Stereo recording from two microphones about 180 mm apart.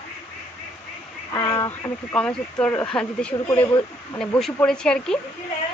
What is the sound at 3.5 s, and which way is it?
Speech, 30° left (ahead or behind).